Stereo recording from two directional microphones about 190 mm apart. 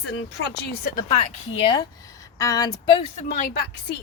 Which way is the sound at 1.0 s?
30° left (ahead or behind).